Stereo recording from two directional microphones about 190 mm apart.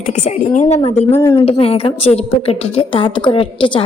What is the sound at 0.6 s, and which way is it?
A woman's voice, 30° left (ahead or behind).